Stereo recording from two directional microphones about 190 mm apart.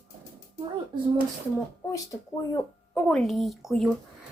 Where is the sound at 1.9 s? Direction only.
20° left (ahead or behind).